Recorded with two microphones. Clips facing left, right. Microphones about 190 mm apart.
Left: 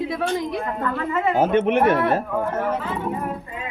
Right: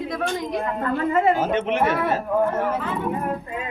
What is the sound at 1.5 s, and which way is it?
Speech, 55° left (ahead or behind).